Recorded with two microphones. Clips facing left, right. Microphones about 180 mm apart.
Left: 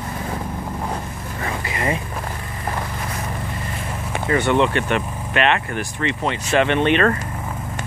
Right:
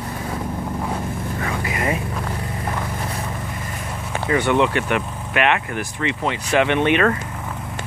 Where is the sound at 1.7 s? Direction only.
10° right (ahead or behind).